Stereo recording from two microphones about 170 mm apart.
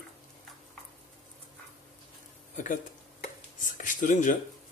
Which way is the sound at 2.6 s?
50° left (ahead or behind).